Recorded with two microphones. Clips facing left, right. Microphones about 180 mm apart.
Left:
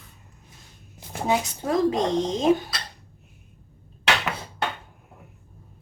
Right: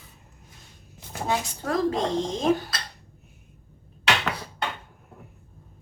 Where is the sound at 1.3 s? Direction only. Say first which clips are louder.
Left 3 dB; 20° left (ahead or behind).